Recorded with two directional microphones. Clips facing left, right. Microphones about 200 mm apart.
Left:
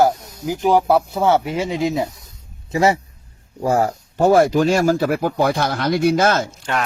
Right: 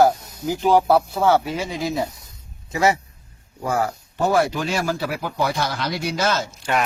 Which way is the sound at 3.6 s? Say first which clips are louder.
Left 5 dB; 40° left (ahead or behind).